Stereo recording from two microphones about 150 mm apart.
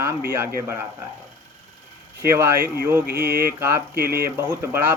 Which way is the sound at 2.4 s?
15° right (ahead or behind).